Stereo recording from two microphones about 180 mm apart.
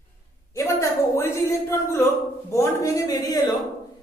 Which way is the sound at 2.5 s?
15° left (ahead or behind).